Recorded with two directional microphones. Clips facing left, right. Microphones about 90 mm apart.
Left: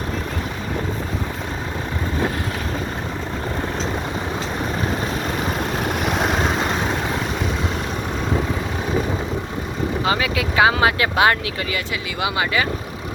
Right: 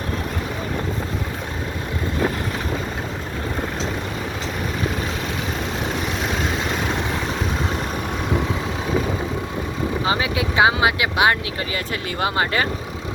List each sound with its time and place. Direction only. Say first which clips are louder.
10.1 s speech: left 1 dB; 25° right (ahead or behind)
12.2 s speech: even; 45° right (ahead or behind)